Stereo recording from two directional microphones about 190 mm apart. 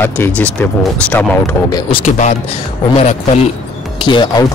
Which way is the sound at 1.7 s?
20° left (ahead or behind).